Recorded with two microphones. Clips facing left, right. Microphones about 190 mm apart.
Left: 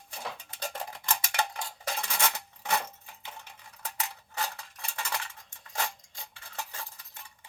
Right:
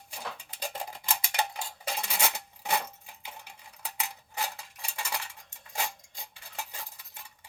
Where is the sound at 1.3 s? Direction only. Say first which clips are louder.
Even; 15° right (ahead or behind).